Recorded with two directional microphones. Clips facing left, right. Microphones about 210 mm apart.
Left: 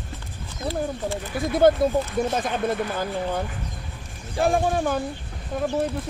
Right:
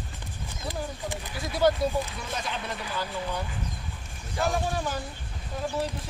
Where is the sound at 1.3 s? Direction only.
55° left (ahead or behind).